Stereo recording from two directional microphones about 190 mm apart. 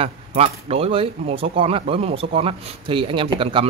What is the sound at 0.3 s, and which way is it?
A man's voice, 30° right (ahead or behind).